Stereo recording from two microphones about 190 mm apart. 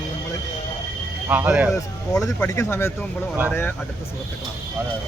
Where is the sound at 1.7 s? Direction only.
15° left (ahead or behind).